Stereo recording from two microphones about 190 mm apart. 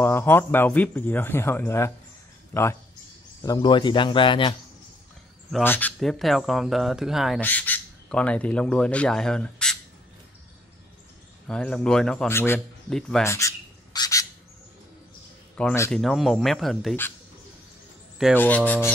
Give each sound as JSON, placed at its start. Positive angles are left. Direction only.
{"t": 0.0, "sound": "speech", "side_deg": 10}
{"t": 3.4, "sound": "speech", "side_deg": 25}
{"t": 5.6, "sound": "speech", "side_deg": 10}
{"t": 7.4, "sound": "speech", "side_deg": 10}
{"t": 11.4, "sound": "speech", "side_deg": 5}
{"t": 13.2, "sound": "bird", "side_deg": 15}
{"t": 15.5, "sound": "speech", "side_deg": 10}
{"t": 18.3, "sound": "speech", "side_deg": 10}